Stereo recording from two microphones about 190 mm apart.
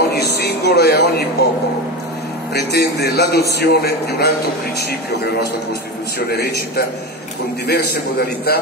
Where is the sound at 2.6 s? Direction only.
60° left (ahead or behind).